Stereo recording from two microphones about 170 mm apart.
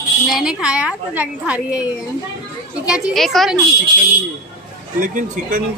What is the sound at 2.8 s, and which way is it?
Speech, 5° right (ahead or behind).